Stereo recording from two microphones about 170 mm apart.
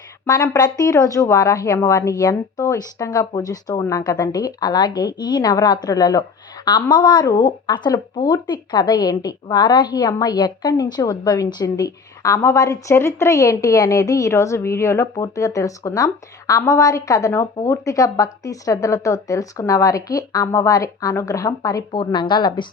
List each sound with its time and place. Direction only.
0.3 s speech: 20° left (ahead or behind)